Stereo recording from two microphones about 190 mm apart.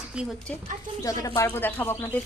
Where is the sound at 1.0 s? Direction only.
20° left (ahead or behind).